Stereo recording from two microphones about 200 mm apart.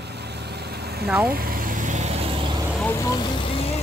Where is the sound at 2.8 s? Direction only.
15° left (ahead or behind).